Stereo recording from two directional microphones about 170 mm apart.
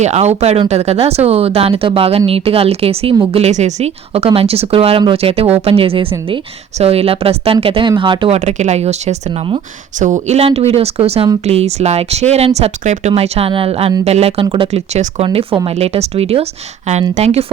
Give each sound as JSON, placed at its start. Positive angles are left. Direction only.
{"t": 0.0, "sound": "a woman's voice", "side_deg": -40}
{"t": 8.4, "sound": "a woman's voice", "side_deg": -40}